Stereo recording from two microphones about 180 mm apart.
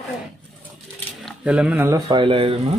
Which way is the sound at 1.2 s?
5° right (ahead or behind).